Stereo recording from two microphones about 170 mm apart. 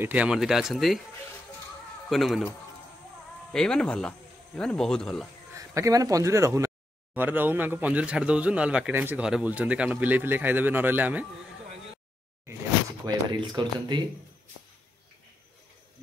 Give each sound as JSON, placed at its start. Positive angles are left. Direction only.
{"t": 0.0, "sound": "speech", "side_deg": -10}
{"t": 2.0, "sound": "speech", "side_deg": 0}
{"t": 3.5, "sound": "speech", "side_deg": 5}
{"t": 5.5, "sound": "a man's voice", "side_deg": -20}
{"t": 13.0, "sound": "speech", "side_deg": -25}